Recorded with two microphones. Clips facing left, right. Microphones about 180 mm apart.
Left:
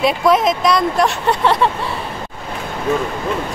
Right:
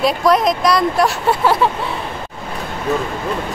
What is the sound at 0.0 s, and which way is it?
Speech, centre (ahead or behind).